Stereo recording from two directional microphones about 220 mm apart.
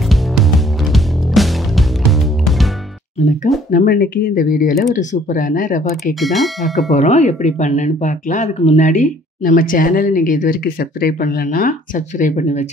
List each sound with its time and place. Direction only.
0.1 s music: centre (ahead or behind)
3.7 s speech: 40° left (ahead or behind)
6.1 s speech: centre (ahead or behind)
6.9 s speech: 30° left (ahead or behind)